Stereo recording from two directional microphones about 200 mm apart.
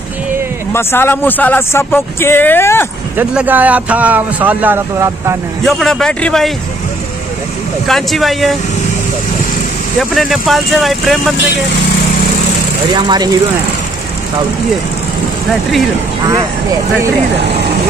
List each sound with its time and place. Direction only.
0.7 s speech: 10° left (ahead or behind)
3.2 s speech: 10° right (ahead or behind)
5.7 s speech: centre (ahead or behind)
7.8 s speech: centre (ahead or behind)
9.9 s speech: centre (ahead or behind)
12.9 s speech: 20° right (ahead or behind)